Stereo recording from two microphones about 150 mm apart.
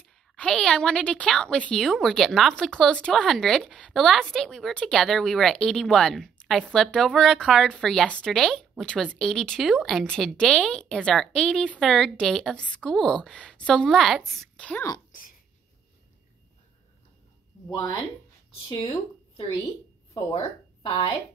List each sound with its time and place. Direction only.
0.0 s a woman's voice: 5° left (ahead or behind)
17.6 s speech: 30° left (ahead or behind)
20.3 s speech: 35° left (ahead or behind)